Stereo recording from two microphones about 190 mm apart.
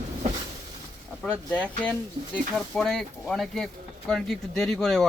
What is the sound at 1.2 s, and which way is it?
Speech, 5° left (ahead or behind).